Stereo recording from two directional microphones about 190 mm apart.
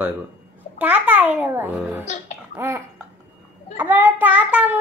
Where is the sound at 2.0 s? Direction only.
35° left (ahead or behind).